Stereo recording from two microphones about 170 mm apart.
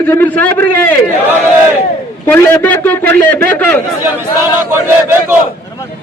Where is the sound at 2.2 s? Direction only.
15° left (ahead or behind).